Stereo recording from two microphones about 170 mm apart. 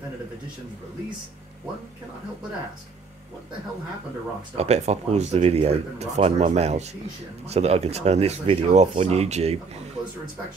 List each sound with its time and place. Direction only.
4.6 s speech: 40° right (ahead or behind)